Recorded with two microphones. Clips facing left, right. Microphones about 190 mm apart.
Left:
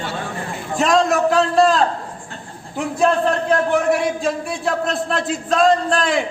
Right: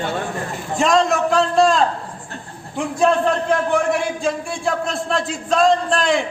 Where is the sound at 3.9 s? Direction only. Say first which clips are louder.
Left 1 dB; centre (ahead or behind).